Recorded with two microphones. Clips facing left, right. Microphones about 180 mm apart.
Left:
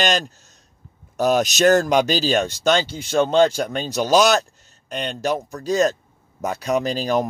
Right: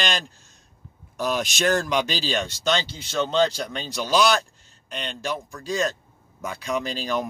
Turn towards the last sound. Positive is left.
turn(degrees=45)  # may be behind; listen again after turning